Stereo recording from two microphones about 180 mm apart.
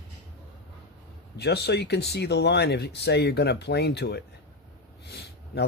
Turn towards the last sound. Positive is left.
turn(degrees=70)  # may be behind; listen again after turning